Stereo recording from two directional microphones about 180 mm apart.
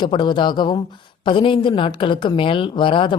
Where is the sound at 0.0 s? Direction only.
25° left (ahead or behind).